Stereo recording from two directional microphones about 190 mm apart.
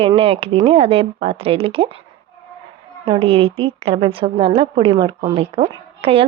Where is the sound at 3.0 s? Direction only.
30° right (ahead or behind).